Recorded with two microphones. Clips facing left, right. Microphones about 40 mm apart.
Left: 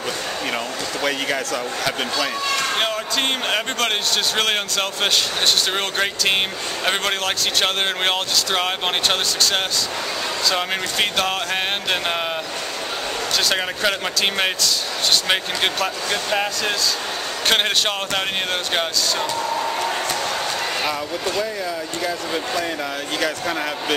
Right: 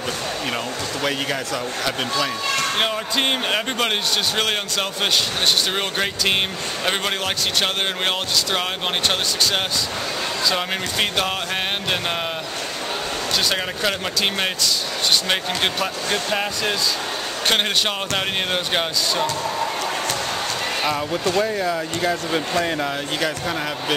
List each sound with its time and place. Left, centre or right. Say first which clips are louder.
1.5 s speech: left 1 dB; centre
10.5 s speech: left 1 dB; centre
13.8 s speech: left 1 dB; centre
15.8 s speech: even; centre
21.4 s speech: right 3 dB; right
22.8 s speech: right 1 dB; centre